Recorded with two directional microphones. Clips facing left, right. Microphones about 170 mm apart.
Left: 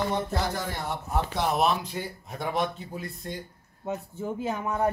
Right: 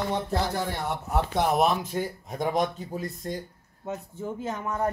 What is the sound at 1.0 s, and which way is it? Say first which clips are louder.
Speech: right 3 dB; 50° right (ahead or behind).